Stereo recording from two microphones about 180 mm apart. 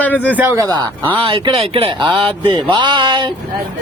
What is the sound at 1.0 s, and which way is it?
Speech, 30° right (ahead or behind).